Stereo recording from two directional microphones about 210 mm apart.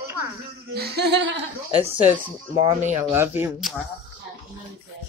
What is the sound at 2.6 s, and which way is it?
Speech, 30° right (ahead or behind).